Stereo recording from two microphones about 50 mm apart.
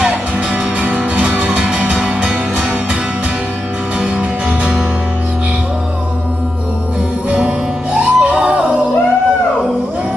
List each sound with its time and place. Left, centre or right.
0.7 s music: right
7.2 s music: right